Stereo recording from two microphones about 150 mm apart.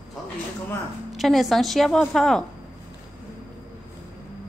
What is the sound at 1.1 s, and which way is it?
A woman's voice, centre (ahead or behind).